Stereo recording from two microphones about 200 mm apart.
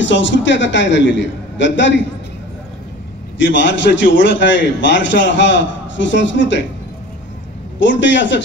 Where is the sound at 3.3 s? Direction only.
65° left (ahead or behind).